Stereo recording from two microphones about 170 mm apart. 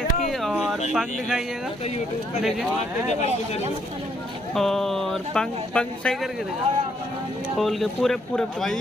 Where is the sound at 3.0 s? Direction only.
40° left (ahead or behind).